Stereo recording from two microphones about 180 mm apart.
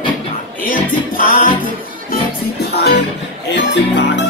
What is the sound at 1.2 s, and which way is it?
Music, 50° left (ahead or behind).